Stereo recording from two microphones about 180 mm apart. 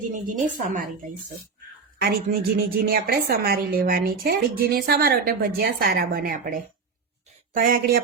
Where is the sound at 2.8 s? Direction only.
55° right (ahead or behind).